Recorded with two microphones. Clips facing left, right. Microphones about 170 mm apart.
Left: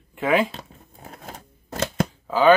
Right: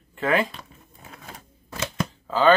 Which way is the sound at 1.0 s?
45° left (ahead or behind).